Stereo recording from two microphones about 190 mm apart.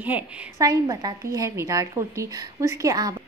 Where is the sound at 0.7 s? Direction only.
20° right (ahead or behind).